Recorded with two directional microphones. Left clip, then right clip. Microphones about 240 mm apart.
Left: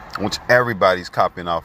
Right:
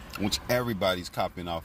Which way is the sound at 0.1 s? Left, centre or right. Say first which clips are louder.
Left 12 dB; centre.